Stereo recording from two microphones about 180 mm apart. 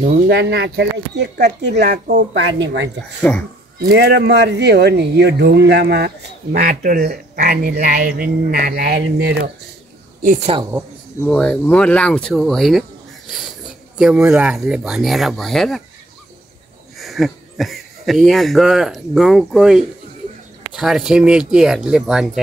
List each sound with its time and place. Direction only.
0.3 s speech: 65° right (ahead or behind)
3.2 s a child's voice: 10° left (ahead or behind)
3.8 s speech: 60° right (ahead or behind)
6.7 s frog: 50° right (ahead or behind)
10.2 s frog: 45° right (ahead or behind)
11.2 s speech: 5° left (ahead or behind)
13.9 s speech: 5° right (ahead or behind)
17.0 s speech: centre (ahead or behind)